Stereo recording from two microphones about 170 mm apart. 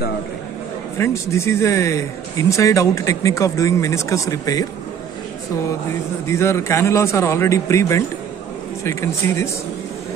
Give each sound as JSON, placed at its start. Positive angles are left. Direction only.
{"t": 0.9, "sound": "speech", "side_deg": 15}
{"t": 5.9, "sound": "speech", "side_deg": 15}